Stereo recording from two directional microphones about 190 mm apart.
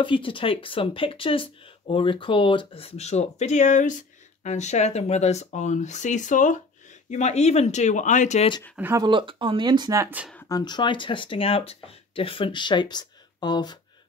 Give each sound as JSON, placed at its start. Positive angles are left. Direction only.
{"t": 0.0, "sound": "speech", "side_deg": 25}
{"t": 8.7, "sound": "speech", "side_deg": -10}
{"t": 9.0, "sound": "speech", "side_deg": -25}
{"t": 10.5, "sound": "speech", "side_deg": 20}